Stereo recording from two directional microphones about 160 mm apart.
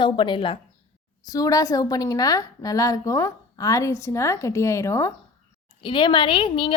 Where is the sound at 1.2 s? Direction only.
20° left (ahead or behind).